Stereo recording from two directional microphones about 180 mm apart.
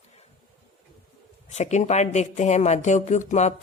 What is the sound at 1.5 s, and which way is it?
Speech, 40° left (ahead or behind).